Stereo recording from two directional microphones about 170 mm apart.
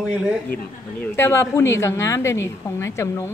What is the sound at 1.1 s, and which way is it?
A woman's voice, 15° left (ahead or behind).